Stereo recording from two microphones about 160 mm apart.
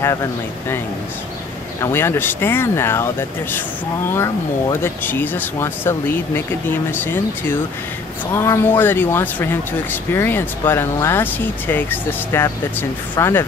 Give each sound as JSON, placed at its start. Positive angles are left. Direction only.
{"t": 0.0, "sound": "speech", "side_deg": 20}
{"t": 1.8, "sound": "speech", "side_deg": 15}